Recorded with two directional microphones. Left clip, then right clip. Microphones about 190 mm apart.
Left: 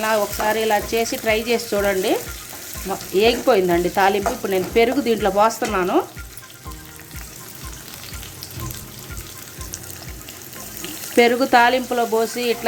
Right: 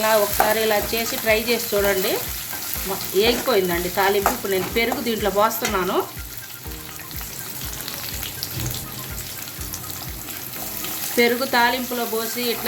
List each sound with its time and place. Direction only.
0.0 s stir: 45° left (ahead or behind)
3.2 s stir: 50° left (ahead or behind)
11.2 s stir: 50° left (ahead or behind)